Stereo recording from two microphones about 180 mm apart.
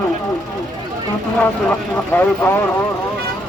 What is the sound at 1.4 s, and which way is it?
Speech, 10° left (ahead or behind).